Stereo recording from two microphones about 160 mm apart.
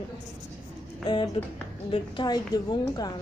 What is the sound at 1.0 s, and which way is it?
A woman's voice, 30° left (ahead or behind).